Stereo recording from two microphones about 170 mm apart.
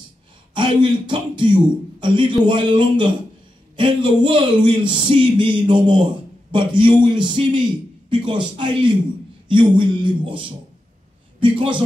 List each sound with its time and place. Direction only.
0.6 s a man's voice: 30° right (ahead or behind)